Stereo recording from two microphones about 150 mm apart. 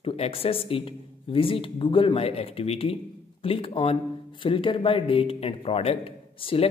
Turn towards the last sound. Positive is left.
turn(degrees=35)  # may be behind; listen again after turning